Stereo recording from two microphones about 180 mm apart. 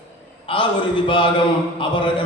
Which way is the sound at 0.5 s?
30° left (ahead or behind).